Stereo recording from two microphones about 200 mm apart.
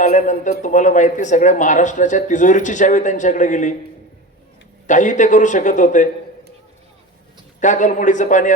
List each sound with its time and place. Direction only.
0.0 s speech: 40° left (ahead or behind)
4.9 s speech: 40° left (ahead or behind)
7.6 s speech: 40° left (ahead or behind)